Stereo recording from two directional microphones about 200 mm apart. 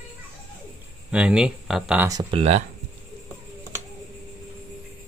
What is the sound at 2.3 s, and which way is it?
Speech, 30° right (ahead or behind).